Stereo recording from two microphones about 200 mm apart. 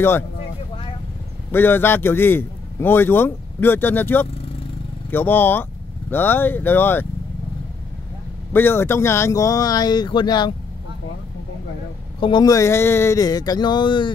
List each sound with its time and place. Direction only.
1.5 s a man's voice: 10° left (ahead or behind)
8.5 s a man's voice: 10° left (ahead or behind)
12.2 s speech: 25° left (ahead or behind)